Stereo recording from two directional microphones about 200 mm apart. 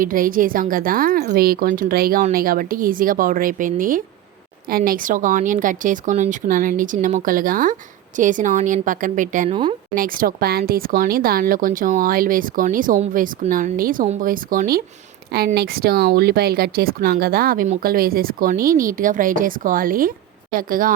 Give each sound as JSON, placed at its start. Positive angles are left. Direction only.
{"t": 0.0, "sound": "speech", "side_deg": -45}